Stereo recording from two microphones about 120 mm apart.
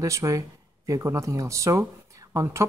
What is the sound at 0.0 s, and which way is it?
Speech, 25° right (ahead or behind).